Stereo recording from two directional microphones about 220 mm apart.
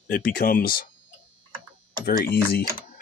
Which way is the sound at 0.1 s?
40° left (ahead or behind).